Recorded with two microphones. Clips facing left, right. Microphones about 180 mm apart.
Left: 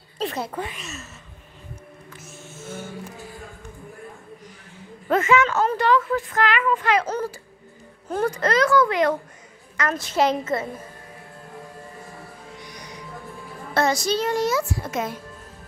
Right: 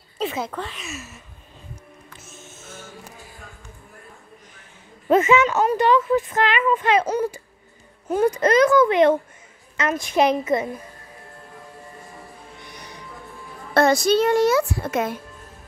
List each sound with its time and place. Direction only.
0.2 s a sound: centre (ahead or behind)
0.5 s speech: 10° left (ahead or behind)
0.7 s a woman's voice: 10° right (ahead or behind)
5.0 s a woman's voice: 20° right (ahead or behind)
12.6 s music: 60° right (ahead or behind)
13.7 s a woman's voice: 60° right (ahead or behind)